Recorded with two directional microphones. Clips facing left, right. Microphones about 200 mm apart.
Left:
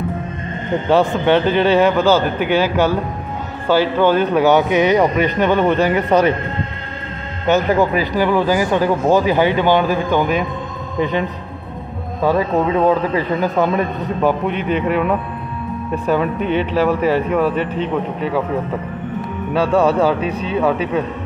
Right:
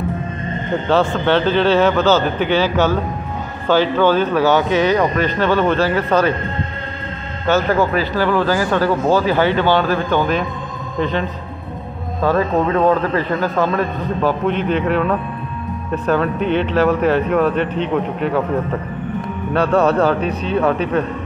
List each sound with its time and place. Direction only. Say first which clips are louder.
0.8 s a man's voice: left 2 dB; 15° left (ahead or behind)
7.4 s a man's voice: left 1 dB; 15° left (ahead or behind)
19.5 s a man's voice: even; 10° left (ahead or behind)